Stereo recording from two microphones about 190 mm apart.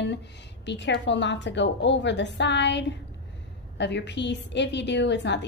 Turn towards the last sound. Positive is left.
turn(degrees=65)  # may be behind; listen again after turning